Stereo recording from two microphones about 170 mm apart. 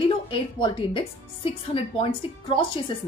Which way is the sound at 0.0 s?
30° left (ahead or behind).